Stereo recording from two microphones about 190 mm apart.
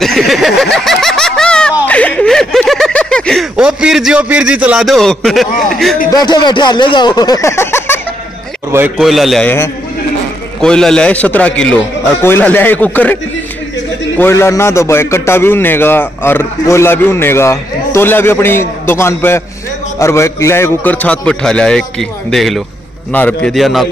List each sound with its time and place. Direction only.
0.0 s a man's voice: centre (ahead or behind)
0.8 s snicker: centre (ahead or behind)
5.7 s a man's voice: centre (ahead or behind)
6.1 s speech: 25° left (ahead or behind)
8.9 s a man's voice: centre (ahead or behind)
10.6 s a man's voice: 5° left (ahead or behind)